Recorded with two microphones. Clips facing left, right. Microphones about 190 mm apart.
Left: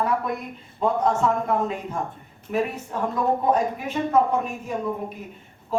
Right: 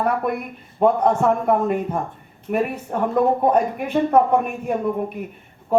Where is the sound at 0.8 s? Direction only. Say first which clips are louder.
Right 5 dB; 60° right (ahead or behind).